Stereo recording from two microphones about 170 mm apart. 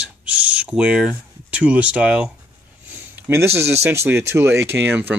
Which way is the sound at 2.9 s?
15° right (ahead or behind).